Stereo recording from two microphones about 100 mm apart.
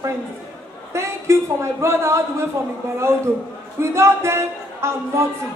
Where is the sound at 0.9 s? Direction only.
30° right (ahead or behind).